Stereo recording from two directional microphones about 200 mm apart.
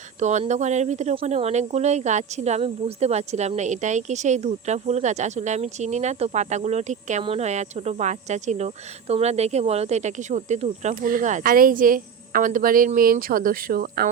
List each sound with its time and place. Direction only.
0.2 s speech: 35° right (ahead or behind)